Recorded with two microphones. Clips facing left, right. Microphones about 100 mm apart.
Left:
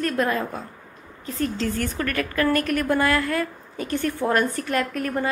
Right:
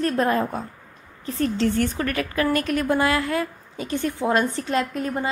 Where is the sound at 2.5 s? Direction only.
50° left (ahead or behind).